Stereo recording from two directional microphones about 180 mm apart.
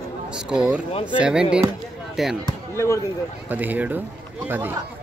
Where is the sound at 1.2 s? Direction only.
5° right (ahead or behind).